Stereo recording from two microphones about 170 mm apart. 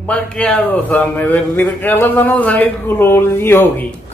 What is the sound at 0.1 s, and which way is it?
A man's voice, 5° left (ahead or behind).